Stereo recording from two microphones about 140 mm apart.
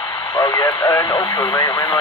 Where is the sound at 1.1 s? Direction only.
30° left (ahead or behind).